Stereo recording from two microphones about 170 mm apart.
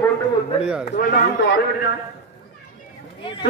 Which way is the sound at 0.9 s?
65° left (ahead or behind).